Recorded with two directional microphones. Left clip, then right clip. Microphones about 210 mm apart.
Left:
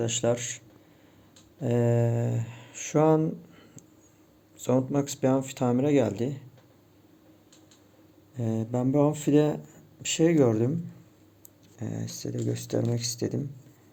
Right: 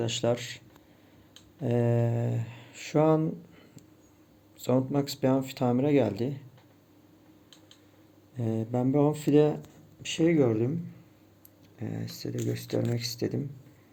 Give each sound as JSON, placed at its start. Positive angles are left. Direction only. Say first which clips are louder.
{"t": 0.0, "sound": "speech", "louder": "left 2 dB", "side_deg": 5}
{"t": 1.6, "sound": "speech", "louder": "left 2 dB", "side_deg": 5}
{"t": 8.4, "sound": "speech", "louder": "even", "side_deg": 5}
{"t": 11.8, "sound": "speech", "louder": "left 1 dB", "side_deg": 5}